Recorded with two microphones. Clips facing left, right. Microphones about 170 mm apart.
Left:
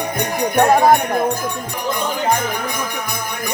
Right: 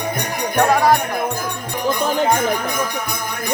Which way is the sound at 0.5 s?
20° left (ahead or behind).